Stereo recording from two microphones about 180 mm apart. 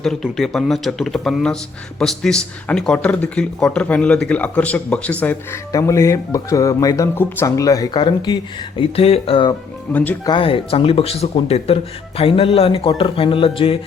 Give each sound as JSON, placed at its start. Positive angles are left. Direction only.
{"t": 0.0, "sound": "speech", "side_deg": 0}
{"t": 9.9, "sound": "speech", "side_deg": 10}
{"t": 10.2, "sound": "speech", "side_deg": 30}